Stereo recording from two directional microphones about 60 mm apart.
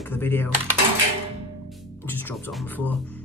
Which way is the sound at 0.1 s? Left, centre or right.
Left.